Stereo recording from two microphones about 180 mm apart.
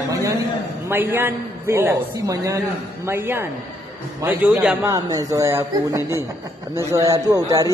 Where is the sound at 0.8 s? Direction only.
10° right (ahead or behind).